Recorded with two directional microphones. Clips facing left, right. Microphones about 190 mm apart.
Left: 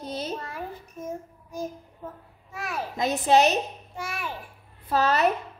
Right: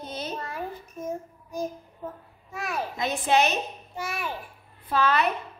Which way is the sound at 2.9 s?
40° left (ahead or behind).